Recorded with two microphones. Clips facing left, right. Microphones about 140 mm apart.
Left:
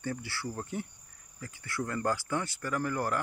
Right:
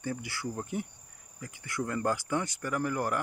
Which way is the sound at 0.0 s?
15° right (ahead or behind).